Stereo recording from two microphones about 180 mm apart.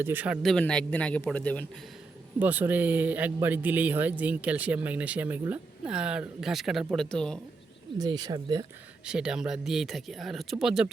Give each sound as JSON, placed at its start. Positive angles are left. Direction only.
{"t": 0.0, "sound": "speech", "side_deg": -10}
{"t": 0.4, "sound": "a man's voice", "side_deg": 5}
{"t": 2.4, "sound": "speech", "side_deg": -10}
{"t": 7.9, "sound": "speech", "side_deg": -20}
{"t": 9.0, "sound": "speech", "side_deg": -5}